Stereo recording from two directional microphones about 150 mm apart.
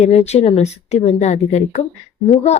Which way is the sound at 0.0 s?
45° left (ahead or behind).